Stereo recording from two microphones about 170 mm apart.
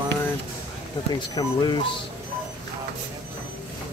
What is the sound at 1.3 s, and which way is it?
Speech, 25° left (ahead or behind).